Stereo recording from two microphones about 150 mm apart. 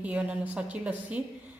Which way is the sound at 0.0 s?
10° right (ahead or behind).